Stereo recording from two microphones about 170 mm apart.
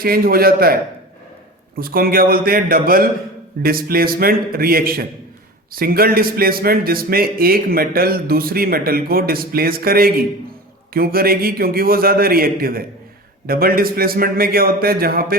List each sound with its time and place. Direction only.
0.0 s a man's voice: 60° right (ahead or behind)